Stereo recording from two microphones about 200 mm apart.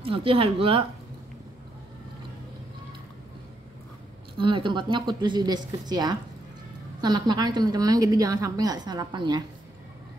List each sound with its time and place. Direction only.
0.0 s a woman's voice: 25° right (ahead or behind)
4.4 s a woman's voice: 25° right (ahead or behind)